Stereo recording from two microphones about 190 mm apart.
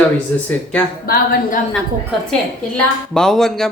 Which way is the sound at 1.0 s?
50° left (ahead or behind).